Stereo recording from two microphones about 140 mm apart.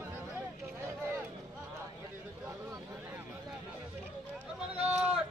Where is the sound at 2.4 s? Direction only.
20° right (ahead or behind).